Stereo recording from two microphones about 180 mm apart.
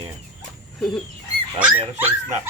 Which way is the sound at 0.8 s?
5° left (ahead or behind).